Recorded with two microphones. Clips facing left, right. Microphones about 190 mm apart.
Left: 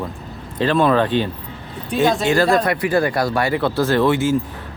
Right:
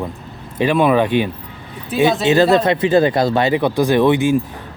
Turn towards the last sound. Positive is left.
turn(degrees=-15)  # may be behind; listen again after turning